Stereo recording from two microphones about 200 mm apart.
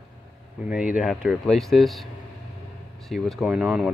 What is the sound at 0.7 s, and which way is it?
Speech, 5° right (ahead or behind).